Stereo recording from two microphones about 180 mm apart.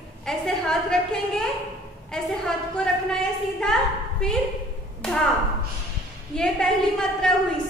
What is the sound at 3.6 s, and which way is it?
A woman's voice, 5° left (ahead or behind).